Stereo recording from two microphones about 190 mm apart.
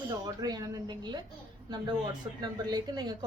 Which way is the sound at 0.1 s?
20° right (ahead or behind).